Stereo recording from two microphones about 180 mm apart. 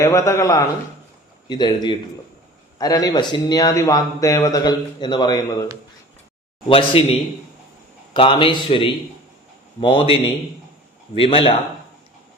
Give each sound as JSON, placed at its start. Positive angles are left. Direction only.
{"t": 0.0, "sound": "a man's voice", "side_deg": 15}
{"t": 6.7, "sound": "a man's voice", "side_deg": 30}